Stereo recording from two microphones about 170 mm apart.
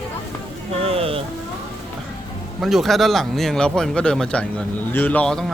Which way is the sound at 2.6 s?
Centre (ahead or behind).